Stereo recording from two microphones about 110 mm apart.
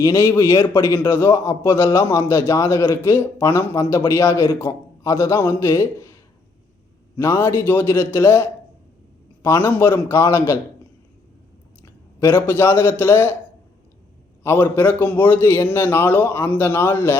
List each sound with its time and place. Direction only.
0.0 s a man's voice: 25° left (ahead or behind)
7.2 s a man's voice: 20° left (ahead or behind)
11.8 s a man's voice: 20° left (ahead or behind)
14.4 s a man's voice: 20° left (ahead or behind)